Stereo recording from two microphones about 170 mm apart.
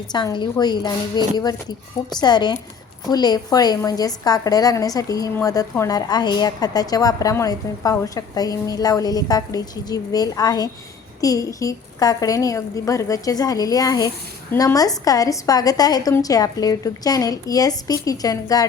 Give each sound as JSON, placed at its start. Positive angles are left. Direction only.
{"t": 0.1, "sound": "a woman's voice", "side_deg": 25}